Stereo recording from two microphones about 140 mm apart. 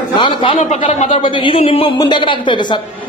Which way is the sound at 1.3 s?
40° left (ahead or behind).